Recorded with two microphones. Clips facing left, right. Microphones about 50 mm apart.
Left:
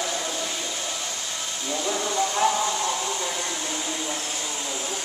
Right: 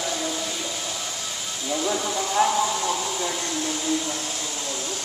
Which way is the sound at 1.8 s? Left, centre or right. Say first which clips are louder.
Left 2 dB; centre.